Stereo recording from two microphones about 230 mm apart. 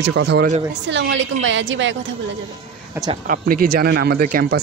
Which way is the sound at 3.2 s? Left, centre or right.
Right.